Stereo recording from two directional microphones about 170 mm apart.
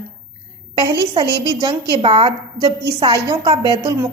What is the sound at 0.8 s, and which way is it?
A woman's voice, 30° right (ahead or behind).